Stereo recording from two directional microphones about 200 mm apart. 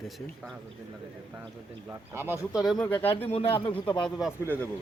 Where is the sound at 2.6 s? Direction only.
Centre (ahead or behind).